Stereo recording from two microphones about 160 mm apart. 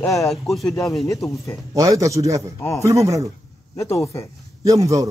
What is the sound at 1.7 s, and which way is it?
A man's voice, 20° right (ahead or behind).